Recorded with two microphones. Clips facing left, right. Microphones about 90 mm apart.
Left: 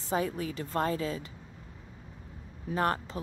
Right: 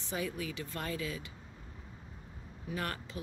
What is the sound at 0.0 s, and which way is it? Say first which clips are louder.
A woman's voice: left 6 dB; 40° left (ahead or behind).